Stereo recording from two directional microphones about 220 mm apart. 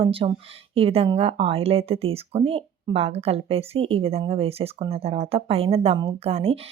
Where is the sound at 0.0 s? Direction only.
25° right (ahead or behind).